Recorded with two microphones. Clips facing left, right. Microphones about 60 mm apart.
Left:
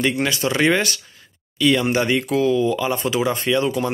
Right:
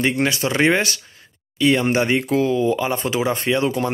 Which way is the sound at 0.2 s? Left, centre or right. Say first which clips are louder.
Right 1 dB; right.